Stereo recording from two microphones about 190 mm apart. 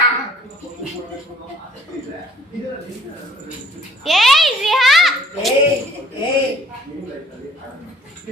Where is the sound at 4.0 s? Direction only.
Centre (ahead or behind).